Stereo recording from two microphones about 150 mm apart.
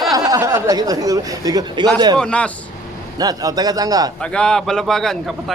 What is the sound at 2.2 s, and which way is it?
Speech, 5° left (ahead or behind).